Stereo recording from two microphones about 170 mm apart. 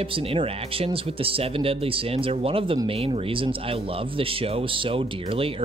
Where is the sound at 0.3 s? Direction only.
35° right (ahead or behind).